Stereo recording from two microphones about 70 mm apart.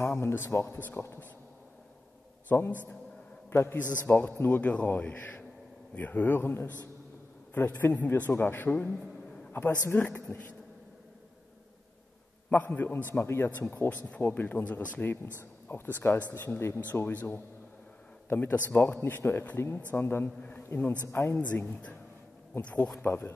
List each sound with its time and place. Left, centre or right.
0.2 s a man's voice: left
2.5 s a man's voice: left
3.9 s a man's voice: left
12.4 s a man's voice: left
13.8 s a man's voice: left
16.4 s a man's voice: left
21.1 s a man's voice: left
21.4 s a man's voice: left